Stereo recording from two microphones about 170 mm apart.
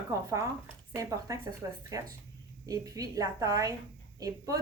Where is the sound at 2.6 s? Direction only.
20° right (ahead or behind).